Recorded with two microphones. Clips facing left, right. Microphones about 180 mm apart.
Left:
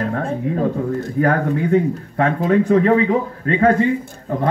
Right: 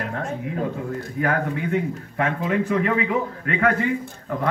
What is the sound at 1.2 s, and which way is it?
Speech, 35° left (ahead or behind).